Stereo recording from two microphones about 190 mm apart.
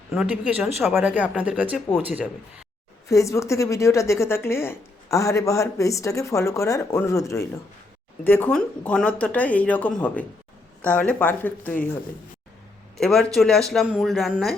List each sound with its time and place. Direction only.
0.1 s speech: 5° right (ahead or behind)
3.1 s a woman's voice: 15° left (ahead or behind)
13.0 s speech: 5° left (ahead or behind)